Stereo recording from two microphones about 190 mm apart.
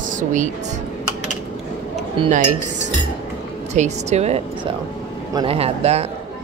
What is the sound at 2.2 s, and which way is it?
Speech, 25° right (ahead or behind).